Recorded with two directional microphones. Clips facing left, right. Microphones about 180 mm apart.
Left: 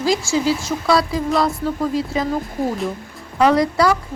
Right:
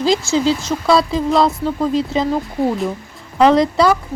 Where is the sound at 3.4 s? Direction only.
25° right (ahead or behind).